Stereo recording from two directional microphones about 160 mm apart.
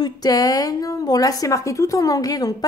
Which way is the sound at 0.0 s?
25° left (ahead or behind).